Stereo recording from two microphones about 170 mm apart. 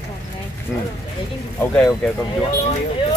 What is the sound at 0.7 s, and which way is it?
Speech, centre (ahead or behind).